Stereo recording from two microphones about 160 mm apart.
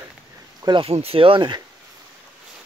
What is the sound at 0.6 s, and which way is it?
Speech, 30° right (ahead or behind).